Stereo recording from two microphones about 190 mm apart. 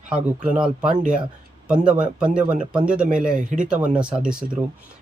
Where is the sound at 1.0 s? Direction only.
45° right (ahead or behind).